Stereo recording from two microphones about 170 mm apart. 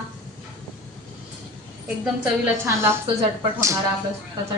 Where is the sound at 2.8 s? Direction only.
15° right (ahead or behind).